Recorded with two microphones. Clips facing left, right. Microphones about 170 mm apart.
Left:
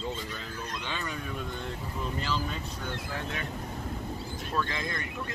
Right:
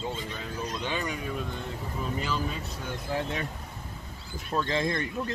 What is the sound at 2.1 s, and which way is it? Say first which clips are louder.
Speech: right 1 dB; 5° right (ahead or behind).